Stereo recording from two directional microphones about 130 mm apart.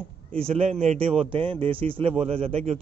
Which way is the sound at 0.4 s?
55° right (ahead or behind).